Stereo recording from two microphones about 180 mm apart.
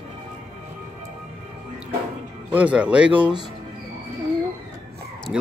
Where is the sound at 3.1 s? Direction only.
25° right (ahead or behind).